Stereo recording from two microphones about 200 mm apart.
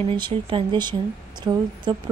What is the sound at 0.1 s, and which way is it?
Speech, 25° right (ahead or behind).